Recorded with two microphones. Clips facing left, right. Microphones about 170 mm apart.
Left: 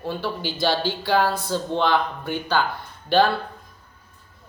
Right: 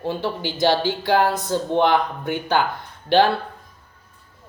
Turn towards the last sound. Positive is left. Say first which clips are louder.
# right 2 dB
turn(degrees=-15)  # may be behind; listen again after turning